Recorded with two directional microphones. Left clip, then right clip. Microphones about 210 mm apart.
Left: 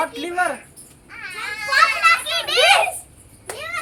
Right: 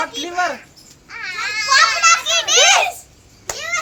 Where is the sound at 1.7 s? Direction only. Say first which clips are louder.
Right 2 dB; 25° right (ahead or behind).